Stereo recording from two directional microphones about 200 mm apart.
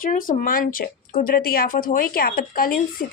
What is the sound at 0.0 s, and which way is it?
A woman's voice, 45° left (ahead or behind).